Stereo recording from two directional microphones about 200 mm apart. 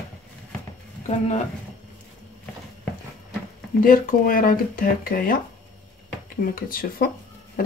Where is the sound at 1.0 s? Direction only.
35° left (ahead or behind).